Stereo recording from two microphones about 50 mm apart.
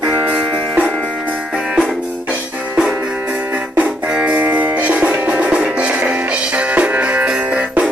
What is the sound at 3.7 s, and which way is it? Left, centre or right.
Music, right.